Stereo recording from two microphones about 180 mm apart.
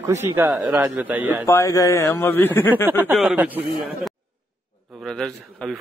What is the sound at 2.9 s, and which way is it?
A man's voice, 10° right (ahead or behind).